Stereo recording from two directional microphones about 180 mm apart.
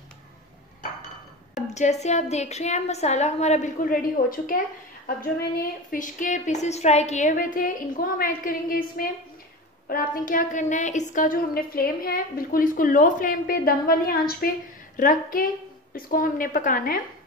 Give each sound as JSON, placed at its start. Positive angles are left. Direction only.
{"t": 1.7, "sound": "a woman's voice", "side_deg": 40}